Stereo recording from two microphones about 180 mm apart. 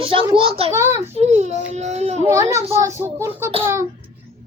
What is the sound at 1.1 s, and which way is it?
A woman's voice, 40° right (ahead or behind).